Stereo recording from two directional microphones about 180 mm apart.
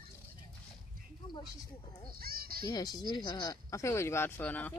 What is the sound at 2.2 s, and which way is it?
Music, 55° right (ahead or behind).